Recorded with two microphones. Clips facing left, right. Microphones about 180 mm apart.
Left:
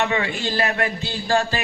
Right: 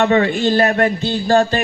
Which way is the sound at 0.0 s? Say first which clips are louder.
Right 9 dB; 40° right (ahead or behind).